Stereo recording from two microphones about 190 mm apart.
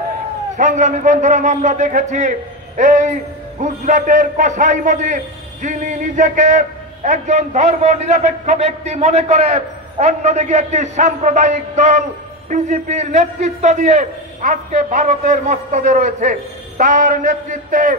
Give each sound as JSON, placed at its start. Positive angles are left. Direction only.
{"t": 0.6, "sound": "a man's voice", "side_deg": -40}